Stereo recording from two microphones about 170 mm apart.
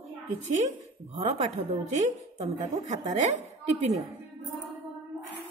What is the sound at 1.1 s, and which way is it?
Speech, 40° right (ahead or behind).